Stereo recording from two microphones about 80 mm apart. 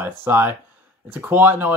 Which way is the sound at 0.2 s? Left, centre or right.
Right.